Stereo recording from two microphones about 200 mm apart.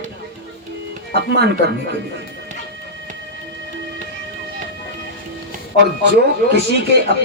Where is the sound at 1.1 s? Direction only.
55° right (ahead or behind).